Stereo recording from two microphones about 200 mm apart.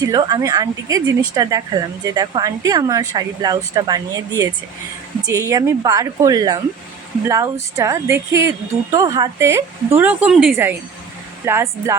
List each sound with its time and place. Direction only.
0.0 s a woman's voice: 20° right (ahead or behind)